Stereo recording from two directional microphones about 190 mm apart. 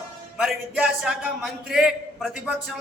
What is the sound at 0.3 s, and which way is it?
A man's voice, 5° right (ahead or behind).